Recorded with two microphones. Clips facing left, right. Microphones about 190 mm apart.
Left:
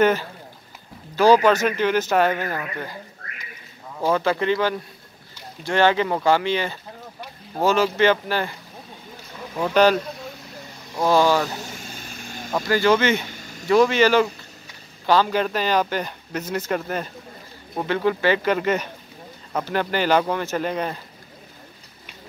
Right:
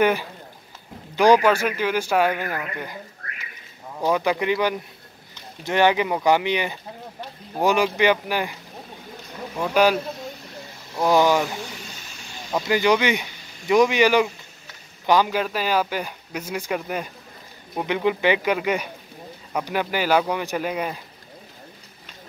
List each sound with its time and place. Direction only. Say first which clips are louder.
0.0 s speech: left 1 dB; 10° right (ahead or behind)
4.0 s speech: left 1 dB; 15° right (ahead or behind)
11.1 s speech: even; 15° right (ahead or behind)
11.9 s vehicle: left 5 dB; 50° left (ahead or behind)
12.5 s speech: left 1 dB; 15° right (ahead or behind)